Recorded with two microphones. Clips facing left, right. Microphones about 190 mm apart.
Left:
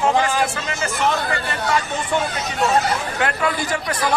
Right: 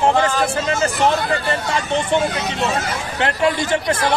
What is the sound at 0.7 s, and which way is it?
Speech, 35° right (ahead or behind).